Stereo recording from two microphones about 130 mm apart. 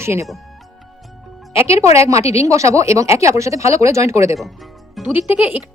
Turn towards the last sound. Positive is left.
turn(degrees=-15)  # may be behind; listen again after turning